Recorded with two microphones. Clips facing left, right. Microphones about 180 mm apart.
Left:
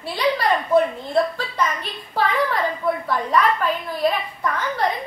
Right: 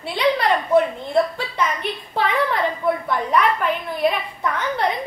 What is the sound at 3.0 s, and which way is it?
A woman's voice, 20° right (ahead or behind).